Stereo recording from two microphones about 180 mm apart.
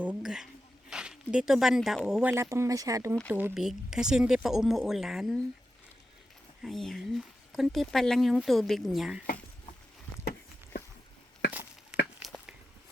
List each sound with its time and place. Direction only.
0.0 s speech: 5° right (ahead or behind)
2.3 s speech: 15° right (ahead or behind)
3.3 s speech: 5° right (ahead or behind)
6.6 s speech: centre (ahead or behind)
12.2 s a sound: centre (ahead or behind)